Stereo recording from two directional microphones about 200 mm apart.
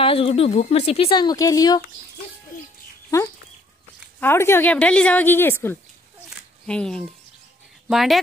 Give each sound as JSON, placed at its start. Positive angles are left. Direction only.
{"t": 0.0, "sound": "speech", "side_deg": 25}
{"t": 4.2, "sound": "speech", "side_deg": 10}